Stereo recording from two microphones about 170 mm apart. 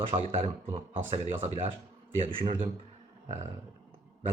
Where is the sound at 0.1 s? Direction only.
35° right (ahead or behind).